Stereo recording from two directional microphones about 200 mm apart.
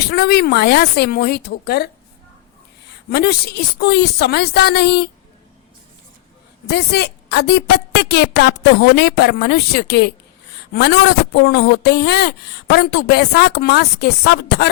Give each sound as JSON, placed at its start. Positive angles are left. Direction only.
{"t": 0.0, "sound": "speech", "side_deg": 55}
{"t": 3.1, "sound": "speech", "side_deg": 55}
{"t": 6.7, "sound": "speech", "side_deg": 55}